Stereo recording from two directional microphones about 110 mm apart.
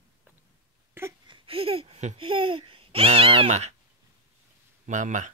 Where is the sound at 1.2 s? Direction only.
50° right (ahead or behind); by 2.2 s 75° right (ahead or behind).